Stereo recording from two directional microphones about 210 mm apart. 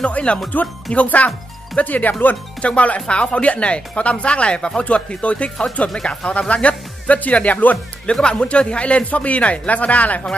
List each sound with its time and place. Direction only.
0.0 s speech: 5° left (ahead or behind)